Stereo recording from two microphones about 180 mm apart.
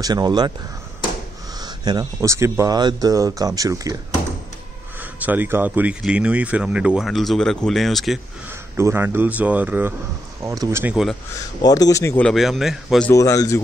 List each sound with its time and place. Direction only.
0.0 s speech: 25° right (ahead or behind)
1.6 s a sound: 20° right (ahead or behind)
2.2 s speech: 15° right (ahead or behind)
5.2 s speech: 10° right (ahead or behind)
8.5 s speech: 15° right (ahead or behind)
11.6 s speech: 20° left (ahead or behind)
12.3 s speech: centre (ahead or behind)
13.1 s speech: 20° left (ahead or behind)